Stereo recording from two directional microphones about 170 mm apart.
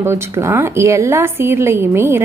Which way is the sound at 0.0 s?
15° right (ahead or behind).